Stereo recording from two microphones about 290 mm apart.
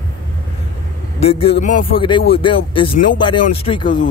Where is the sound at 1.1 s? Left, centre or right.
Centre.